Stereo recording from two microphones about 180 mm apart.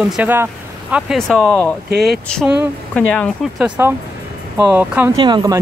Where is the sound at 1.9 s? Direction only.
60° right (ahead or behind).